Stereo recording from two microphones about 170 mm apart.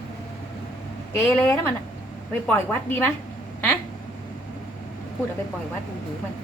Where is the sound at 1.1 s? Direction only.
15° left (ahead or behind).